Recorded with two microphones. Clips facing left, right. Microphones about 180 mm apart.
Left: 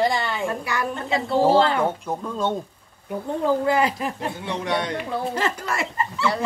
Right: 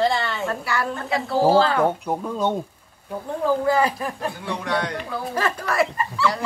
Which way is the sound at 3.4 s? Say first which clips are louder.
Right 1 dB; 20° left (ahead or behind).